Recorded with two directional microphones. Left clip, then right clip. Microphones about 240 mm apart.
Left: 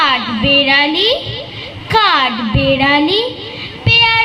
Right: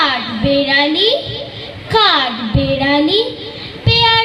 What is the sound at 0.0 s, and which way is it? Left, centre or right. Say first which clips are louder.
Music: left 2 dB; left.